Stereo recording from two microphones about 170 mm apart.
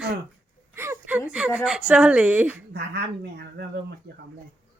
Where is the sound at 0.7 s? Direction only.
15° right (ahead or behind).